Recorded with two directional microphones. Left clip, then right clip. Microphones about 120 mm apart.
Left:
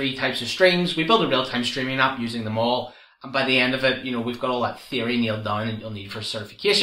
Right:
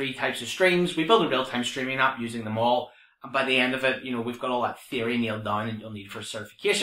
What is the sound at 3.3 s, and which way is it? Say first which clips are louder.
Speech: left 3 dB; 25° left (ahead or behind).